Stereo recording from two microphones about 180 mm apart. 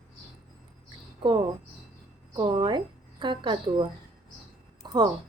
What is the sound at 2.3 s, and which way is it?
A woman's voice, 25° right (ahead or behind).